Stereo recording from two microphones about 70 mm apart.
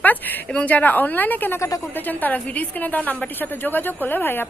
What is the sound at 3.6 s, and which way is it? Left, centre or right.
Speech, left.